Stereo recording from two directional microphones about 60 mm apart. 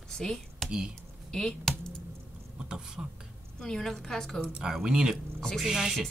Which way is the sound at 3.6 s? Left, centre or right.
Centre.